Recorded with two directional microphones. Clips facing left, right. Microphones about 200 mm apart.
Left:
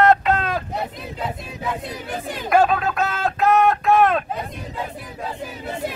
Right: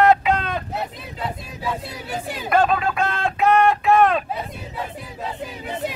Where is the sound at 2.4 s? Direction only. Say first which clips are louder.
Left 1 dB; 5° left (ahead or behind).